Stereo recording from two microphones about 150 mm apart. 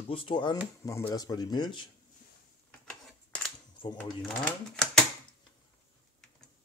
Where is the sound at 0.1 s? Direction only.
35° left (ahead or behind).